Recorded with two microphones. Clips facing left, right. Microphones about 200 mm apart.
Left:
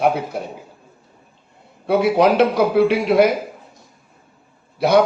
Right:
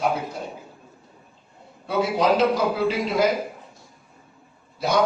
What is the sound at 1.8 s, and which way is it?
A man's voice, 65° left (ahead or behind).